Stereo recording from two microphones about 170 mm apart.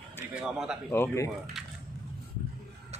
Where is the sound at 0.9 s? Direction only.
15° left (ahead or behind).